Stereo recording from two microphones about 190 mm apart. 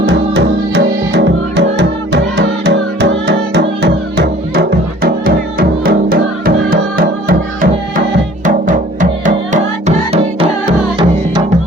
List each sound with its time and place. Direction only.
0.0 s music: 65° right (ahead or behind)
5.0 s music: 50° right (ahead or behind); by 11.4 s 25° right (ahead or behind)